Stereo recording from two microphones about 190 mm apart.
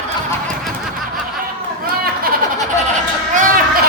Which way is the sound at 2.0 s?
50° right (ahead or behind).